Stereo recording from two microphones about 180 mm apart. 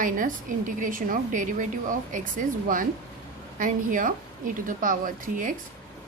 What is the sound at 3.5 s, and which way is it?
A woman's voice, 50° right (ahead or behind).